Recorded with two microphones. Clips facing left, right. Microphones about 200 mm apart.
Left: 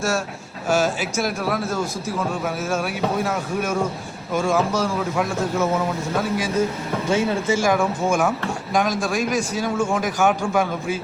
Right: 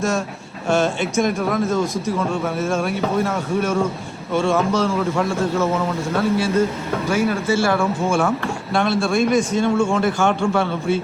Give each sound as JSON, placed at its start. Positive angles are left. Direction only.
{"t": 0.7, "sound": "speech", "side_deg": 5}